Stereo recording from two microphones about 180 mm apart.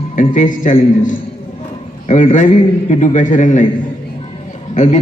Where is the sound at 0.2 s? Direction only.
45° left (ahead or behind).